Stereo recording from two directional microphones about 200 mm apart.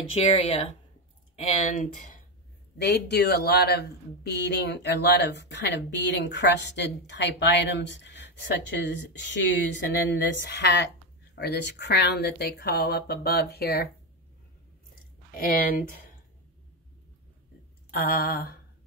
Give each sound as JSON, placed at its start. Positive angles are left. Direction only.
{"t": 0.1, "sound": "speech", "side_deg": 30}
{"t": 2.8, "sound": "a man's voice", "side_deg": 55}
{"t": 15.3, "sound": "speech", "side_deg": 45}
{"t": 17.9, "sound": "speech", "side_deg": 50}